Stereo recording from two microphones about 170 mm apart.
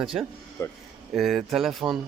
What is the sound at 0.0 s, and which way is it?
Speech, centre (ahead or behind).